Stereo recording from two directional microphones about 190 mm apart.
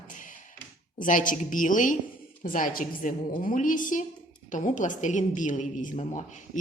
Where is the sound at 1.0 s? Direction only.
45° left (ahead or behind).